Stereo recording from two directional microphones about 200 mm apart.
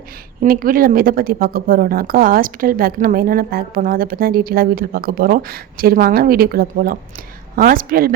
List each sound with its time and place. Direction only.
0.4 s a woman's voice: 45° right (ahead or behind)